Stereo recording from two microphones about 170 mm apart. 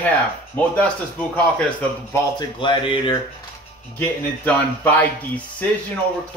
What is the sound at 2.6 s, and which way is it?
Music, 30° left (ahead or behind).